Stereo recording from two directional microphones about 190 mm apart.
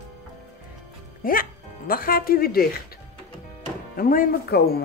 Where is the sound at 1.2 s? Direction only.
50° left (ahead or behind).